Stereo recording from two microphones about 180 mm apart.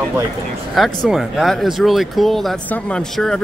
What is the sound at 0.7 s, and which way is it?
Speech, centre (ahead or behind).